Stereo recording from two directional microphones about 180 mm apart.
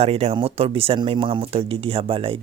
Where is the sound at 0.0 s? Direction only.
35° right (ahead or behind).